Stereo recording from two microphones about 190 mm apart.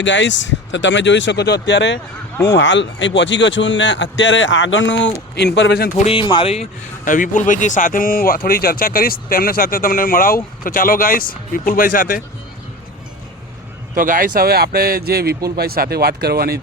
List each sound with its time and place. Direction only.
0.0 s a man's voice: 70° left (ahead or behind)
6.1 s speech: 25° left (ahead or behind); by 12.2 s 45° left (ahead or behind)
13.9 s speech: 45° right (ahead or behind)